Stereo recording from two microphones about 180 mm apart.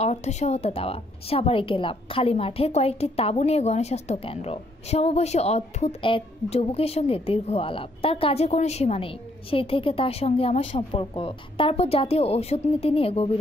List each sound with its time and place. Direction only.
0.0 s a woman's voice: 40° left (ahead or behind)